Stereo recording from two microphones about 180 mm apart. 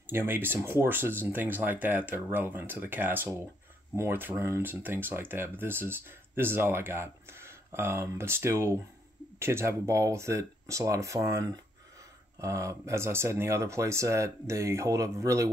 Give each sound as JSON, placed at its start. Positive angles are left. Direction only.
{"t": 0.1, "sound": "speech", "side_deg": -10}